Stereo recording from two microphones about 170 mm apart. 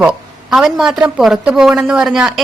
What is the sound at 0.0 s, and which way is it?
A woman's voice, 5° right (ahead or behind).